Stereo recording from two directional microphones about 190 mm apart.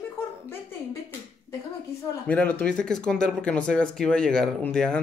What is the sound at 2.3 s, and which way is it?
Speech, 10° left (ahead or behind).